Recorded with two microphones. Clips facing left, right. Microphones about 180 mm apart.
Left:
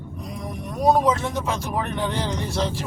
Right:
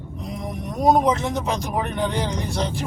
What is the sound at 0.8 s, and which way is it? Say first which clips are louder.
Speech: right 1 dB; 20° right (ahead or behind).